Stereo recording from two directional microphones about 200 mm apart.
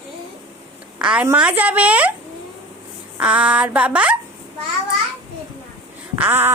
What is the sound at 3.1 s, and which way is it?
A child's voice, 5° right (ahead or behind).